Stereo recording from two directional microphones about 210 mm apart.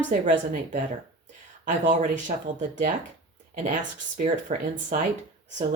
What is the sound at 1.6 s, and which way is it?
Speech, 35° right (ahead or behind).